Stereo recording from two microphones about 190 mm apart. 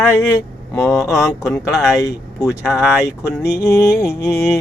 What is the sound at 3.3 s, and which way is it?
Music, 15° left (ahead or behind).